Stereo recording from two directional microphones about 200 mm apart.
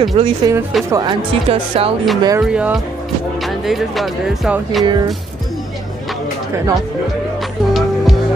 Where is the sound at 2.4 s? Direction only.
5° right (ahead or behind).